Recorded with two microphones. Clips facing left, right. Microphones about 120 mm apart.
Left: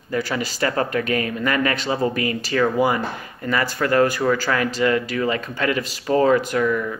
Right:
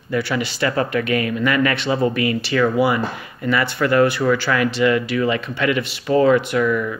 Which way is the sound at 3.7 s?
40° left (ahead or behind).